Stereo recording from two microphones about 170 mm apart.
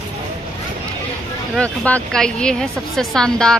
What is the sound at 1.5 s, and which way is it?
Speech, 5° left (ahead or behind).